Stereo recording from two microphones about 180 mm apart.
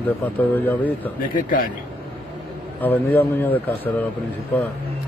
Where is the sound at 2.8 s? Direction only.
10° left (ahead or behind).